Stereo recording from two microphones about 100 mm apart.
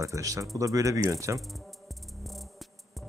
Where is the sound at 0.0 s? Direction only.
35° right (ahead or behind).